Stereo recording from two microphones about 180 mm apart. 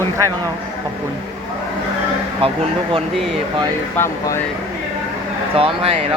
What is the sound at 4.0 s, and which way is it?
Speech, 15° left (ahead or behind).